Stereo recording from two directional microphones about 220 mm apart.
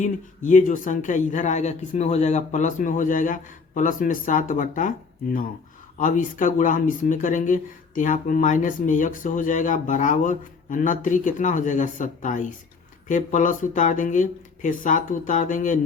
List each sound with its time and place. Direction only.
0.0 s speech: 35° left (ahead or behind)